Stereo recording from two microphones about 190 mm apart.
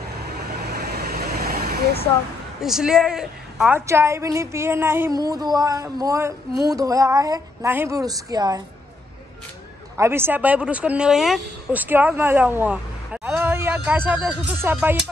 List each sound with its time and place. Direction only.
0.5 s vehicle: 55° right (ahead or behind)
2.6 s a woman's voice: centre (ahead or behind)
3.8 s speech: 15° right (ahead or behind)
9.9 s speech: 10° right (ahead or behind)